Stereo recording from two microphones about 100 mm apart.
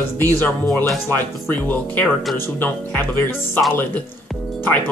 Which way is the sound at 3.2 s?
20° left (ahead or behind).